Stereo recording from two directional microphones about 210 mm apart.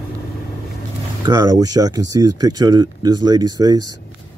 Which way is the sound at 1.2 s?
15° right (ahead or behind).